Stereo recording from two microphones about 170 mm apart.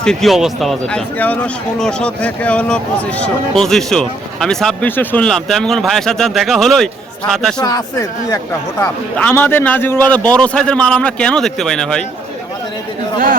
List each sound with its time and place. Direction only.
0.0 s speech: centre (ahead or behind)
7.6 s speech: 20° left (ahead or behind)
8.8 s a man's voice: 10° left (ahead or behind)